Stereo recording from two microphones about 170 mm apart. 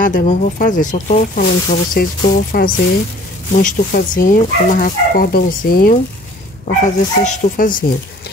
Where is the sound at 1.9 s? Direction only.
60° left (ahead or behind).